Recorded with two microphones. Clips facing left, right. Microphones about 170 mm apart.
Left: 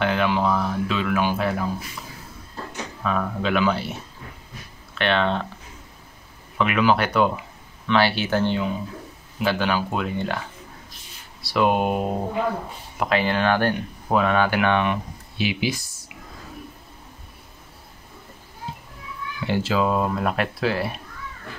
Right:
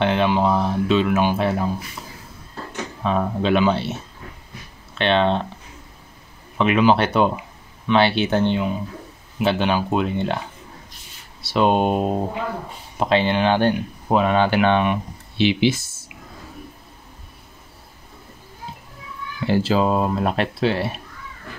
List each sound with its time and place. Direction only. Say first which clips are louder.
0.0 s speech: right 3 dB; 25° right (ahead or behind)
3.0 s speech: right 3 dB; 25° right (ahead or behind)
4.9 s speech: right 3 dB; 20° right (ahead or behind)
6.6 s speech: right 3 dB; 20° right (ahead or behind)
11.4 s speech: right 2 dB; 25° right (ahead or behind)
19.4 s speech: right 3 dB; 35° right (ahead or behind)